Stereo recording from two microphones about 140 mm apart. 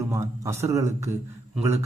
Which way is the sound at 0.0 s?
20° right (ahead or behind).